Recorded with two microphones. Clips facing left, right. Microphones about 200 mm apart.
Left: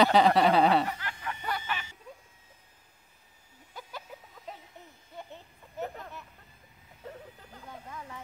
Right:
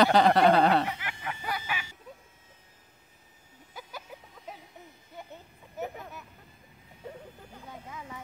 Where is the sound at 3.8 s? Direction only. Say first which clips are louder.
Even; 5° right (ahead or behind).